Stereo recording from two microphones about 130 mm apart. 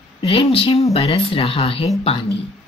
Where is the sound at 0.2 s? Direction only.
45° left (ahead or behind).